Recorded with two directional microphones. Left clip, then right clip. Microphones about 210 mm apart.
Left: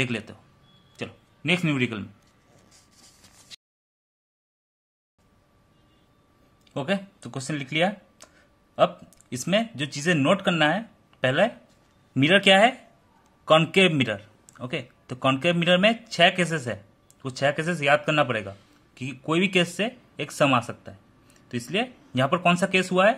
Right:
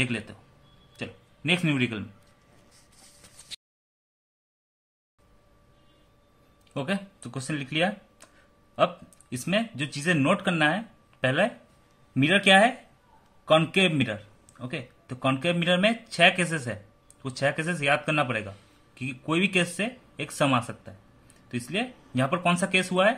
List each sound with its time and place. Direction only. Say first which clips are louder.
0.0 s a man's voice: left 1 dB; 20° left (ahead or behind)
6.7 s a man's voice: left 3 dB; 15° left (ahead or behind)